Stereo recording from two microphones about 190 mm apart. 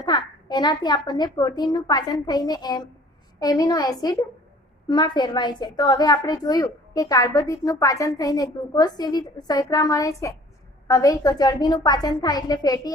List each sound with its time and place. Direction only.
0.0 s a woman's voice: 20° left (ahead or behind)